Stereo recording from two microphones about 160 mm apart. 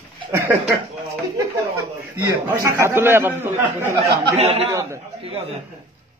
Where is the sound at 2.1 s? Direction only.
15° right (ahead or behind).